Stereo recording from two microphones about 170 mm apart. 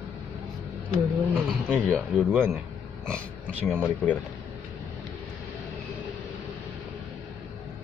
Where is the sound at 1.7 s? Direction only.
5° left (ahead or behind).